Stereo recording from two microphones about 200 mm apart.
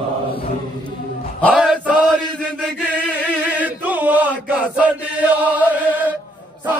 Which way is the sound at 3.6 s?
10° right (ahead or behind).